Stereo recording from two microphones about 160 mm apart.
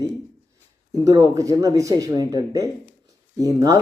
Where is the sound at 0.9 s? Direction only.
25° right (ahead or behind).